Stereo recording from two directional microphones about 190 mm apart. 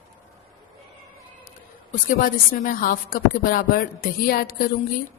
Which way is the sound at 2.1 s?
50° left (ahead or behind).